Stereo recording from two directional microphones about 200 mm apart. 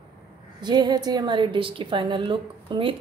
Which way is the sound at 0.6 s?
20° right (ahead or behind).